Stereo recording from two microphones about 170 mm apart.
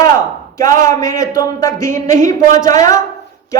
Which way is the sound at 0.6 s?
20° left (ahead or behind).